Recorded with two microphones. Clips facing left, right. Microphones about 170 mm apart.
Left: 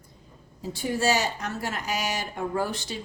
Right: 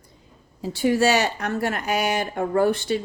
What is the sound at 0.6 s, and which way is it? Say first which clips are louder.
Speech: right 6 dB; 75° right (ahead or behind).